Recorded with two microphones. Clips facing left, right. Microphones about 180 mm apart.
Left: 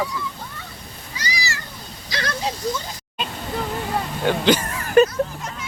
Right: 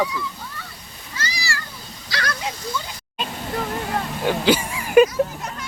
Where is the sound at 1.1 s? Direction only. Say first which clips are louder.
Even; 15° left (ahead or behind).